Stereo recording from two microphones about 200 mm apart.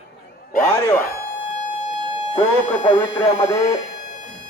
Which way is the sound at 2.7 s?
35° left (ahead or behind).